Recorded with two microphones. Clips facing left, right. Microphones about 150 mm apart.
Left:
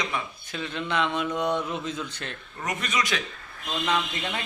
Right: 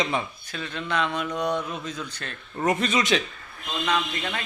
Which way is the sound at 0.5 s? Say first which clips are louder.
Even; 15° left (ahead or behind).